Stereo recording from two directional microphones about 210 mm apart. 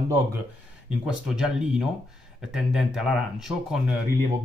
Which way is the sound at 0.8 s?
5° right (ahead or behind).